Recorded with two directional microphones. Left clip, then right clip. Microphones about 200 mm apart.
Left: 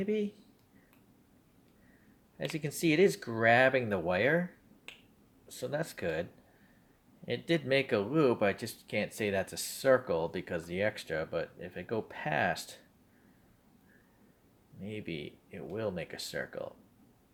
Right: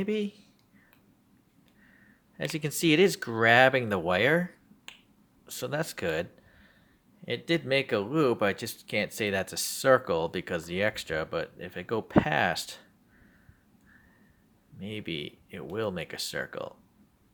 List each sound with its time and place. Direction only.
0.0 s speech: 25° right (ahead or behind)
2.4 s speech: 25° right (ahead or behind)
5.5 s speech: 25° right (ahead or behind)
7.3 s speech: 15° right (ahead or behind)
14.8 s speech: 25° right (ahead or behind)